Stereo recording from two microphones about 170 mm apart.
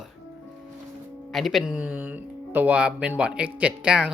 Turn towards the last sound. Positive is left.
turn(degrees=-5)  # may be behind; listen again after turning